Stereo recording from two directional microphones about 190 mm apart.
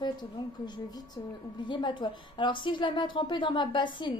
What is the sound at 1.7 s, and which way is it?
A woman's voice, 25° left (ahead or behind).